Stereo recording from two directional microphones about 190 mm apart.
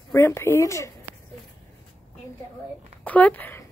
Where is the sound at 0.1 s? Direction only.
15° left (ahead or behind).